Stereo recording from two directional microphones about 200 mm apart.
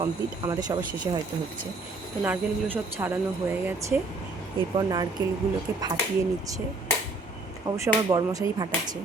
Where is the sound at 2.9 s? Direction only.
10° right (ahead or behind).